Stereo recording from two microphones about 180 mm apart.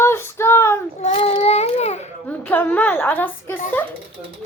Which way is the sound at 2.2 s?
10° left (ahead or behind).